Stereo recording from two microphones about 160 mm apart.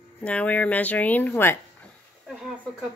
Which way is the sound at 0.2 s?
10° left (ahead or behind).